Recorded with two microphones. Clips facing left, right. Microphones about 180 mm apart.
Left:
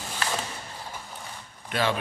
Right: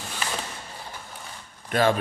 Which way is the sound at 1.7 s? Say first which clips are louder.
Right 5 dB; 50° right (ahead or behind).